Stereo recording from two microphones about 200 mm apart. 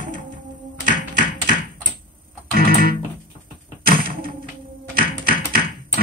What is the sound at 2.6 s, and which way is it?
Music, 45° right (ahead or behind).